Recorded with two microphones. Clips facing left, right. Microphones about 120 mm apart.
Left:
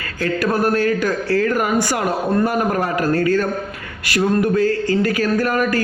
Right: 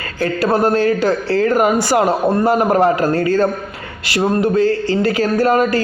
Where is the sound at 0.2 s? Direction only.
30° right (ahead or behind).